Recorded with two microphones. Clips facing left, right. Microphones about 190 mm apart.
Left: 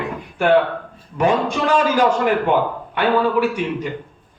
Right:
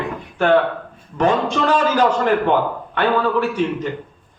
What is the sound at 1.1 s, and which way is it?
Speech, 10° left (ahead or behind).